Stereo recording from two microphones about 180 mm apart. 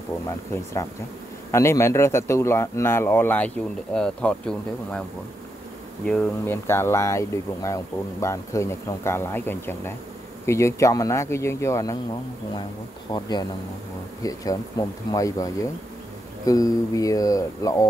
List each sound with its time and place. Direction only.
1.5 s speech: 15° left (ahead or behind)
6.0 s speech: 5° left (ahead or behind)
13.1 s speech: 25° left (ahead or behind)